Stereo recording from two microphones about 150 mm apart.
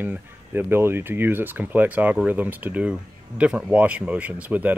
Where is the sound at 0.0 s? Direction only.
10° right (ahead or behind).